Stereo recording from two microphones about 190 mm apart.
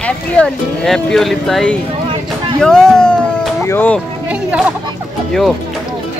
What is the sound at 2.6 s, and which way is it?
Music, 5° left (ahead or behind).